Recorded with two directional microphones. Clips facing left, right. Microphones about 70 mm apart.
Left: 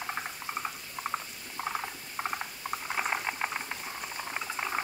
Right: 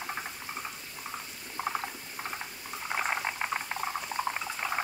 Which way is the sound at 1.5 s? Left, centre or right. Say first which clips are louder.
Right 1 dB; centre.